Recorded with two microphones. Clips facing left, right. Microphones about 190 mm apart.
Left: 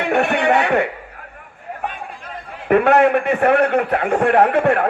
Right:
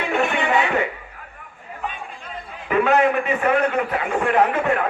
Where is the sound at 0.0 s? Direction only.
65° left (ahead or behind).